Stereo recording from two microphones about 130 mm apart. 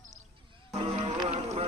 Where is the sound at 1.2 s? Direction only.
55° right (ahead or behind).